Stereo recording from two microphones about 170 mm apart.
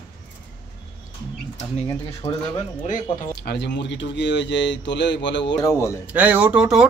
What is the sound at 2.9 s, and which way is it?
Speech, 70° left (ahead or behind).